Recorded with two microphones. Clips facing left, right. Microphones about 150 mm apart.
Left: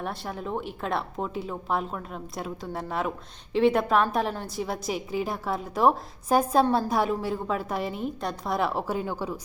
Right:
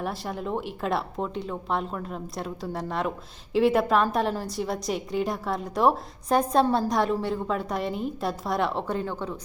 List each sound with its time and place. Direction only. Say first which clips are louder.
0.0 s a woman's voice: right 2 dB; centre (ahead or behind)